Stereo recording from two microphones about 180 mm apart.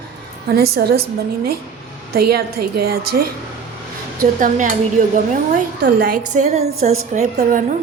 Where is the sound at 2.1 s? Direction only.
60° right (ahead or behind).